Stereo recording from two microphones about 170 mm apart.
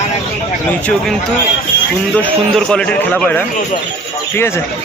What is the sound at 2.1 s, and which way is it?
A man's voice, 5° left (ahead or behind).